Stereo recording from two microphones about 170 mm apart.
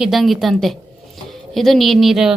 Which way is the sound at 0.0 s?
Centre (ahead or behind).